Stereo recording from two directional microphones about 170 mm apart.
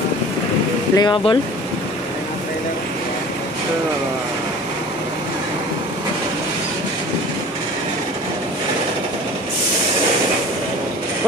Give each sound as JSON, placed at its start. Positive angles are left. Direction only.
{"t": 0.9, "sound": "speech", "side_deg": 25}